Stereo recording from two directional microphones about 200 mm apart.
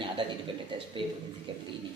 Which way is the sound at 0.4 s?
25° right (ahead or behind).